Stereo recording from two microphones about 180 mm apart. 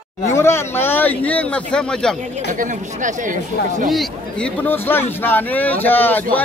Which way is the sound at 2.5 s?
45° right (ahead or behind).